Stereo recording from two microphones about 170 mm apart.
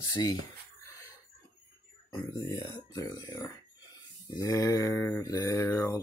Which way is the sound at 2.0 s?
25° left (ahead or behind).